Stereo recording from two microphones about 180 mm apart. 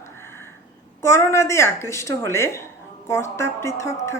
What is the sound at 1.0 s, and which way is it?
A woman's voice, 15° left (ahead or behind).